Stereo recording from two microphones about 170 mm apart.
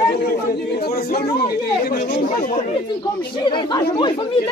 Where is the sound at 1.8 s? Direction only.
50° left (ahead or behind).